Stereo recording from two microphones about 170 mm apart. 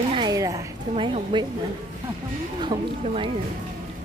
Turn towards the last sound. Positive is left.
turn(degrees=-30)  # may be behind; listen again after turning